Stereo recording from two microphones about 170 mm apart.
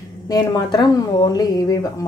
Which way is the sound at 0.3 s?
25° left (ahead or behind).